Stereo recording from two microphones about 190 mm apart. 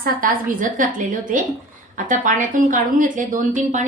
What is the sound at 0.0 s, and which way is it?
Speech, 45° right (ahead or behind).